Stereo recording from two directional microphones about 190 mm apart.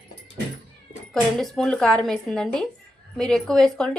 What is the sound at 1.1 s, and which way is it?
A woman's voice, centre (ahead or behind).